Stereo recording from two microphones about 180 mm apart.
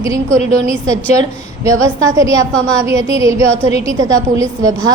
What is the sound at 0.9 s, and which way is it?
A woman's voice, 20° right (ahead or behind).